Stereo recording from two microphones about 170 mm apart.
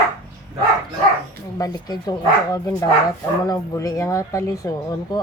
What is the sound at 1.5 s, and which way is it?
Speech, 20° left (ahead or behind).